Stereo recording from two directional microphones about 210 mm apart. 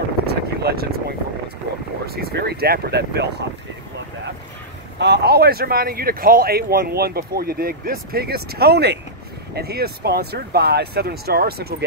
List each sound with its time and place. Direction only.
0.3 s vehicle: 50° right (ahead or behind)
2.0 s speech: 50° right (ahead or behind)
4.9 s speech: 50° right (ahead or behind)